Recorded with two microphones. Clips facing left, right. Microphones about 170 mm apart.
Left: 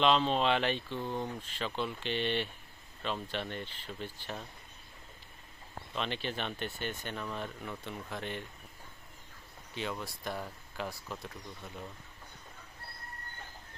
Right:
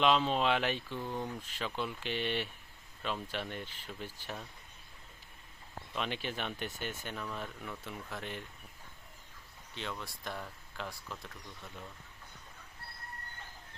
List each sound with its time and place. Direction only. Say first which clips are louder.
0.0 s speech: left 1 dB; 5° right (ahead or behind)
0.9 s speech: left 2 dB; 20° left (ahead or behind)
1.4 s speech: left 2 dB; 10° right (ahead or behind)
5.9 s speech: left 1 dB; 10° right (ahead or behind)
9.7 s speech: left 4 dB; 5° left (ahead or behind)